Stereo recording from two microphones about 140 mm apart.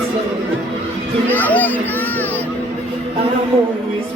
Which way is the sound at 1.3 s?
10° left (ahead or behind).